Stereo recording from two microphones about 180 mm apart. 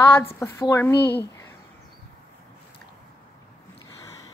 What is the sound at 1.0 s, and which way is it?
Speech, 65° left (ahead or behind).